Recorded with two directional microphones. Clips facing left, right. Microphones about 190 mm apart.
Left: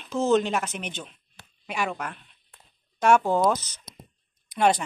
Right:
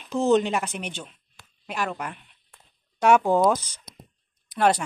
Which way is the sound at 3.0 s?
15° right (ahead or behind).